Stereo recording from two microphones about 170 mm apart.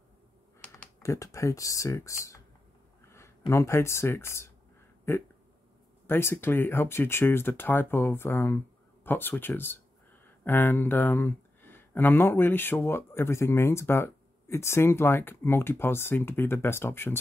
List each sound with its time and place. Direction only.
1.0 s speech: 20° left (ahead or behind)